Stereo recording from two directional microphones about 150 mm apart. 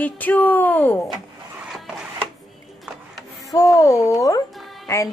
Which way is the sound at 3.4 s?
25° left (ahead or behind).